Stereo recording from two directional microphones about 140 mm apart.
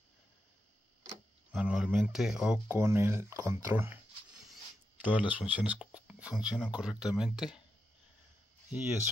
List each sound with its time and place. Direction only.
1.5 s speech: 5° right (ahead or behind)
2.8 s speech: 20° right (ahead or behind)
5.0 s speech: 10° right (ahead or behind)